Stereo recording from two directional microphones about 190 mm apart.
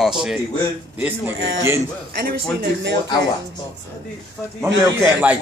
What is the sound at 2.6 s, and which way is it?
Speech, 65° right (ahead or behind).